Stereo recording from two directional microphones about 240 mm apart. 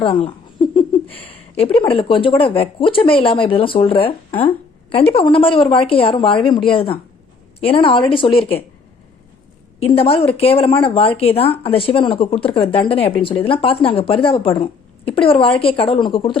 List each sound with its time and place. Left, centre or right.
0.0 s a sound: left
1.0 s speech: centre
1.3 s speech: left
9.8 s speech: left